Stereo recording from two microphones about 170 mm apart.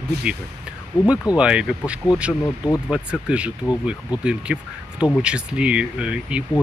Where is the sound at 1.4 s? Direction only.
5° right (ahead or behind).